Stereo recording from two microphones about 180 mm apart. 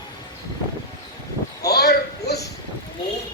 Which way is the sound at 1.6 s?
65° left (ahead or behind).